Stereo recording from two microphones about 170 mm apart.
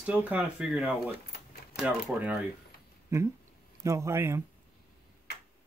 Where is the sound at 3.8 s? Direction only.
15° right (ahead or behind).